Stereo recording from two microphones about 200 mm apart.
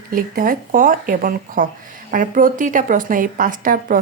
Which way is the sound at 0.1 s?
45° right (ahead or behind).